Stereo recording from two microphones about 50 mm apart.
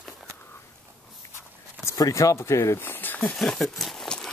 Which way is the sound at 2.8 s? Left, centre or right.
Left.